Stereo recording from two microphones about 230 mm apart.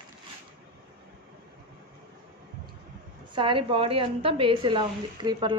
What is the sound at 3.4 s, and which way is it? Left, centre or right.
A woman's voice, right.